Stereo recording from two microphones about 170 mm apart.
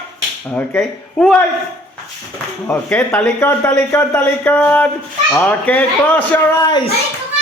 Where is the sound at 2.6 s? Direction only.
10° left (ahead or behind).